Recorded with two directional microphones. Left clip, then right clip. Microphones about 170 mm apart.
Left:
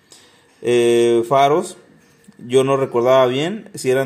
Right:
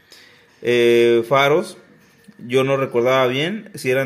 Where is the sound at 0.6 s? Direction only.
15° left (ahead or behind).